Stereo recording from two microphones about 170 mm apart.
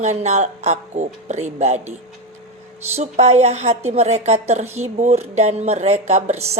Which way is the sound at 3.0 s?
40° right (ahead or behind).